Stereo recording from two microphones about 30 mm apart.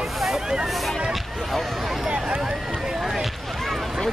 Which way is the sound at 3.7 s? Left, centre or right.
Centre.